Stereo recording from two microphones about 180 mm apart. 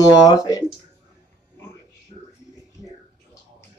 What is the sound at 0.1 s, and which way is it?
Speech, 20° left (ahead or behind).